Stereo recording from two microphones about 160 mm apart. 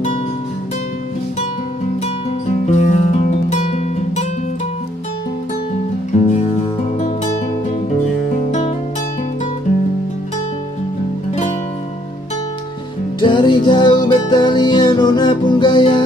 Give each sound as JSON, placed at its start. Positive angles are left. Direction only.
{"t": 2.6, "sound": "music", "side_deg": 45}
{"t": 13.2, "sound": "music", "side_deg": 30}